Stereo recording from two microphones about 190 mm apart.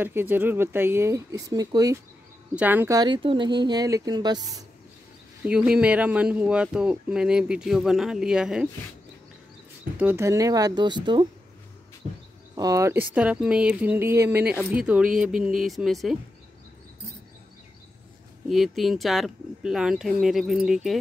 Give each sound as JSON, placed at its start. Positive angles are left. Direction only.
{"t": 0.0, "sound": "speech", "side_deg": -10}
{"t": 5.4, "sound": "speech", "side_deg": -5}
{"t": 9.9, "sound": "speech", "side_deg": -10}
{"t": 12.5, "sound": "speech", "side_deg": -15}
{"t": 18.5, "sound": "speech", "side_deg": 0}